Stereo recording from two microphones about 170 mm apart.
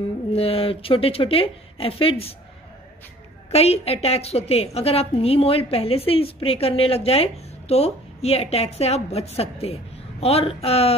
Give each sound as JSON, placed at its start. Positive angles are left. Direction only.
{"t": 0.3, "sound": "a woman's voice", "side_deg": 35}
{"t": 3.5, "sound": "a woman's voice", "side_deg": 35}